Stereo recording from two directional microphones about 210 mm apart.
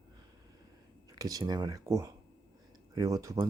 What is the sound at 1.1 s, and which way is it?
Speech, 15° right (ahead or behind).